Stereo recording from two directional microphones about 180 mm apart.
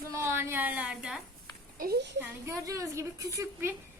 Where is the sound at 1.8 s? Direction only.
60° right (ahead or behind).